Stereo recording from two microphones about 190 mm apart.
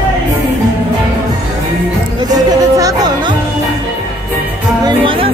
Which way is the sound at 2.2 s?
20° right (ahead or behind).